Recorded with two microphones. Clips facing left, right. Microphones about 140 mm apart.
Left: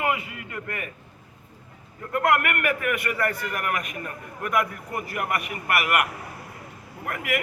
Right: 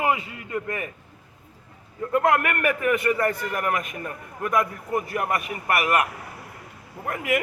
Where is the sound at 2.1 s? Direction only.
30° right (ahead or behind).